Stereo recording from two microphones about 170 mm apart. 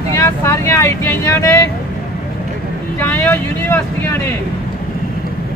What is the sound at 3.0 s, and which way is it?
Speech, 10° left (ahead or behind).